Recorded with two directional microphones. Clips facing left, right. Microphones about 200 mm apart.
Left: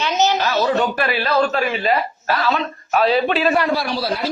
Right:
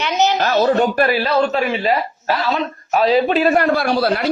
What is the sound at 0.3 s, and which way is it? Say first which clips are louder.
Speech: right 3 dB; 50° right (ahead or behind).